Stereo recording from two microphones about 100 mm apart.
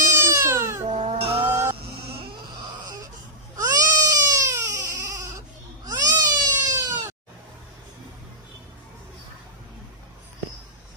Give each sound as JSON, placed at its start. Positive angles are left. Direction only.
{"t": 0.2, "sound": "cat", "side_deg": -25}
{"t": 0.8, "sound": "cat", "side_deg": -75}
{"t": 3.5, "sound": "a sound", "side_deg": -35}
{"t": 5.9, "sound": "cat", "side_deg": -35}